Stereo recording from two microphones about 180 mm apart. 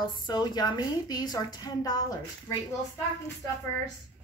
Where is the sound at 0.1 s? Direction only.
25° left (ahead or behind).